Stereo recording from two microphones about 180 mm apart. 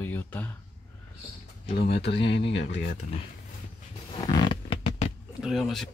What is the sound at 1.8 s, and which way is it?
Speech, 60° left (ahead or behind).